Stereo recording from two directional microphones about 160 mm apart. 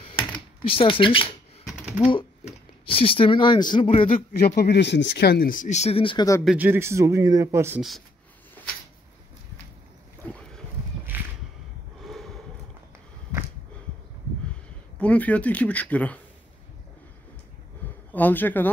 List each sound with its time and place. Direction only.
0.7 s speech: 35° left (ahead or behind)
4.3 s speech: 75° left (ahead or behind); by 6.2 s 35° left (ahead or behind)
6.4 s speech: 10° right (ahead or behind)
12.0 s a sound: centre (ahead or behind)
15.0 s speech: 10° left (ahead or behind)
18.1 s speech: 10° left (ahead or behind)